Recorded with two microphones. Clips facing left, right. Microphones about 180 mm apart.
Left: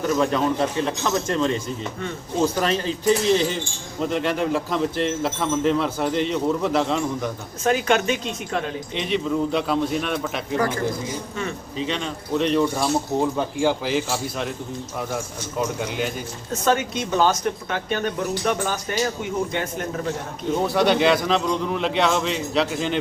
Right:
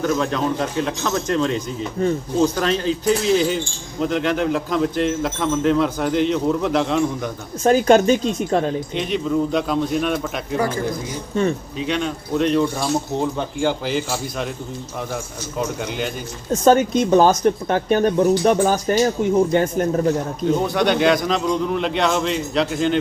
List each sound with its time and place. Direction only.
0.2 s speech: centre (ahead or behind)
2.0 s speech: 35° right (ahead or behind)
2.4 s speech: 5° left (ahead or behind)
7.6 s speech: 35° right (ahead or behind)
9.0 s speech: centre (ahead or behind)
11.8 s speech: 5° right (ahead or behind)
16.5 s speech: 35° right (ahead or behind)
20.6 s speech: 5° left (ahead or behind)